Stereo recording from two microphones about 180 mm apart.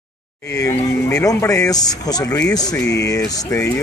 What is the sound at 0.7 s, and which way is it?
Speech, 15° left (ahead or behind).